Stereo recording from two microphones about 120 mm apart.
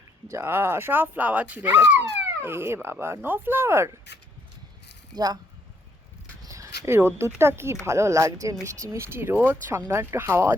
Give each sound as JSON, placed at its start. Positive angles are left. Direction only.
{"t": 0.3, "sound": "speech", "side_deg": -20}
{"t": 5.1, "sound": "speech", "side_deg": -30}
{"t": 6.5, "sound": "speech", "side_deg": -25}